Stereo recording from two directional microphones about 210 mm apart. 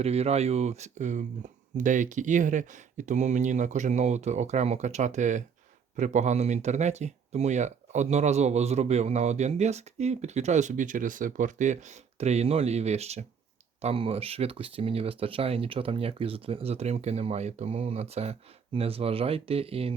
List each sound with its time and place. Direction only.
0.0 s speech: 30° right (ahead or behind)